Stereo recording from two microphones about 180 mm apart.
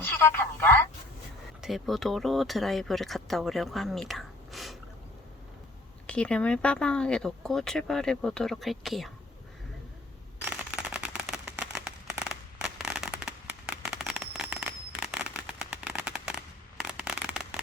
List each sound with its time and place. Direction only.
0.6 s speech: 10° left (ahead or behind)
1.6 s speech: centre (ahead or behind)
6.1 s speech: 5° left (ahead or behind)
10.4 s a sound: 5° right (ahead or behind)